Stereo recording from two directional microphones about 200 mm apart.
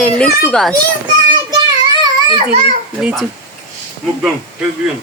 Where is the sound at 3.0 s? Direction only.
5° right (ahead or behind).